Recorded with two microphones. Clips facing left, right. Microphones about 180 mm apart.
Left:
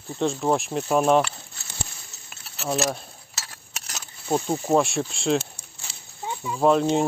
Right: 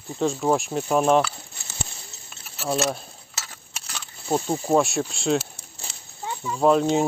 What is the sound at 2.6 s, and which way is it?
Speech, 5° left (ahead or behind).